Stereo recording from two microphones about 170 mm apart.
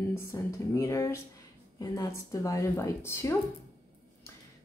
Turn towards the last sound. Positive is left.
turn(degrees=15)  # may be behind; listen again after turning